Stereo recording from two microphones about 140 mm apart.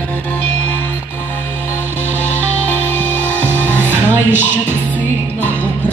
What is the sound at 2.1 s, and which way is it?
Music, 10° left (ahead or behind).